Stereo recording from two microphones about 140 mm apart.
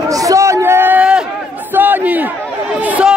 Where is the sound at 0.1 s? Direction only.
25° right (ahead or behind).